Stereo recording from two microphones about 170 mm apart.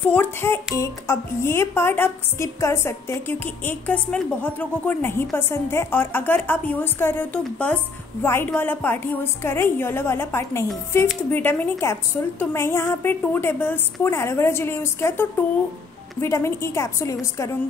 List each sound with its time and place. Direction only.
0.1 s a woman's voice: 10° left (ahead or behind)